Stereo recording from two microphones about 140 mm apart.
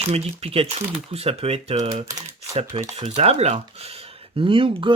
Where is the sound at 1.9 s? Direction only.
25° right (ahead or behind).